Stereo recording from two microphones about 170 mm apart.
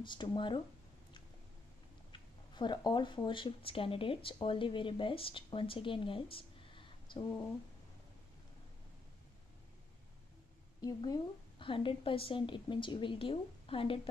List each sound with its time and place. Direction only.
0.0 s speech: 30° left (ahead or behind)
2.1 s speech: 25° left (ahead or behind)
6.3 s a sound: 30° left (ahead or behind)
10.8 s speech: 20° left (ahead or behind)